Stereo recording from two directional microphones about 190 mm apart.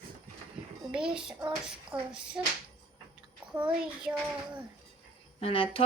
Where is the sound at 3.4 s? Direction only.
10° right (ahead or behind).